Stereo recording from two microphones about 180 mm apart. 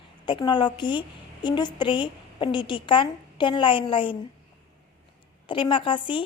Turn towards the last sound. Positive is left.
turn(degrees=30)  # may be behind; listen again after turning